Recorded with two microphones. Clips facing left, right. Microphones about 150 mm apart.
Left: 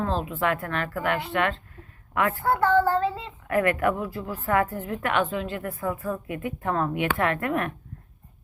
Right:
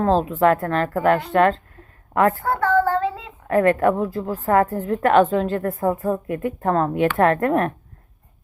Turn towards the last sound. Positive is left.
turn(degrees=-35)  # may be behind; listen again after turning